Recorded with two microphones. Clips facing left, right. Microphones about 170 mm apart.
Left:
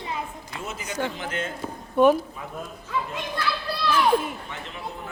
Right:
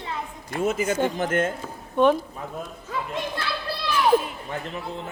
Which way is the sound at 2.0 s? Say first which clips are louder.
Left 1 dB; 10° left (ahead or behind).